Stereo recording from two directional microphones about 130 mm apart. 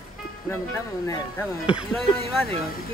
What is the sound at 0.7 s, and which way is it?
Speech, 20° left (ahead or behind).